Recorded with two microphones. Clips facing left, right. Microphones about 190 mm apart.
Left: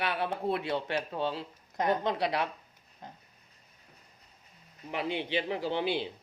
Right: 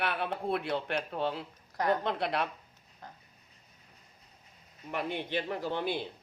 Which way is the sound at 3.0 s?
20° left (ahead or behind).